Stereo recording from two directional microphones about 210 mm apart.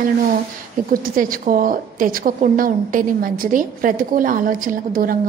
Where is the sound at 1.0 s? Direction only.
40° right (ahead or behind).